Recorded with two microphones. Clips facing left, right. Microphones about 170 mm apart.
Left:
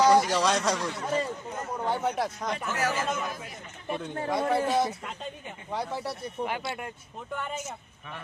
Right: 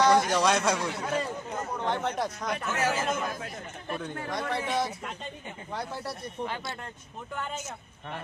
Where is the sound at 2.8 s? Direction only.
30° right (ahead or behind).